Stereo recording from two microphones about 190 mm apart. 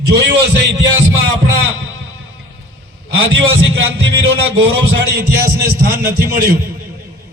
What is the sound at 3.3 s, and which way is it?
Speech, 90° right.